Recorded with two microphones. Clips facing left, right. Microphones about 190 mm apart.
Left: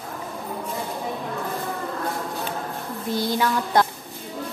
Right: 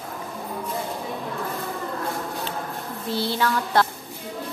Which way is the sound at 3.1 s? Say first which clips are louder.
Left 1 dB; 15° left (ahead or behind).